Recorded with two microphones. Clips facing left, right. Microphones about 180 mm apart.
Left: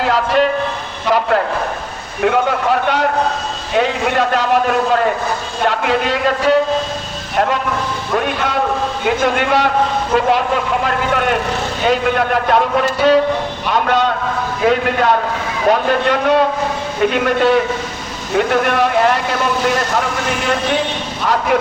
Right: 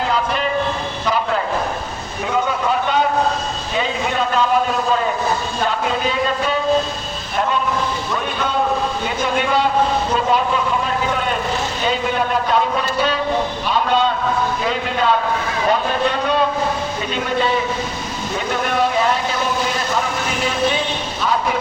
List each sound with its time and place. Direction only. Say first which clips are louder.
0.0 s a sound: left 6 dB; 70° left (ahead or behind)
2.2 s a man's voice: left 5 dB; 65° left (ahead or behind)
13.7 s a man's voice: left 2 dB; 65° left (ahead or behind)